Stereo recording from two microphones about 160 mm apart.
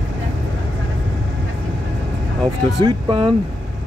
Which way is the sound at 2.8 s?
30° right (ahead or behind).